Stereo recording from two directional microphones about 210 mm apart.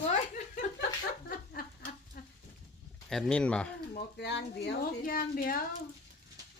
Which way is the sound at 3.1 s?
5° left (ahead or behind).